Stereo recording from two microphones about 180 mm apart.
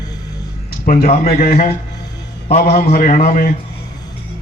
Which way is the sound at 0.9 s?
45° left (ahead or behind).